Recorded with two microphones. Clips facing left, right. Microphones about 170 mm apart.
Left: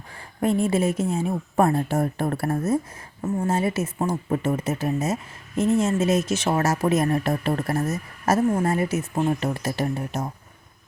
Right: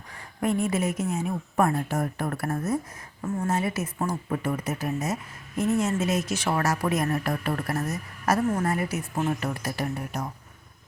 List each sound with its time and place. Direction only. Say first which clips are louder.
0.4 s speech: left 4 dB; 30° left (ahead or behind)